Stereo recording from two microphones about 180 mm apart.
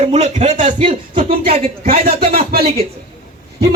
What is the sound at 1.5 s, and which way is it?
Speech, 35° right (ahead or behind).